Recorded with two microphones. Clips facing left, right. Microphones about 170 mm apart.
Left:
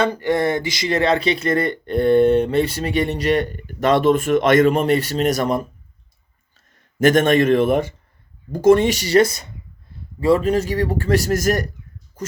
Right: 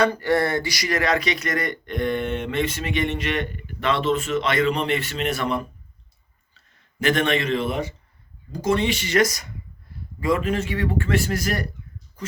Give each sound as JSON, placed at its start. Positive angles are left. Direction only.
{"t": 0.0, "sound": "speech", "side_deg": 20}
{"t": 7.0, "sound": "a man's voice", "side_deg": 45}